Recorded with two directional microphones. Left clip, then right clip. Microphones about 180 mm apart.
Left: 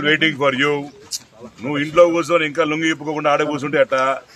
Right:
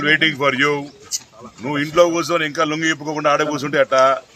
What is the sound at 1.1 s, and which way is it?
Speech, 35° left (ahead or behind).